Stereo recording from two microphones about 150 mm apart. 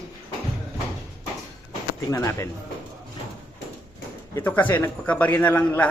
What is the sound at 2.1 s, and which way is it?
Speech, 20° left (ahead or behind).